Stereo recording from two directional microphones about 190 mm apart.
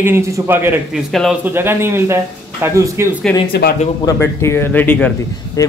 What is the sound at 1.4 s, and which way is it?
Speech, 10° right (ahead or behind).